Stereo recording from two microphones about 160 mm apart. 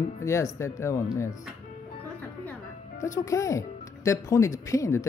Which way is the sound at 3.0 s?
20° left (ahead or behind).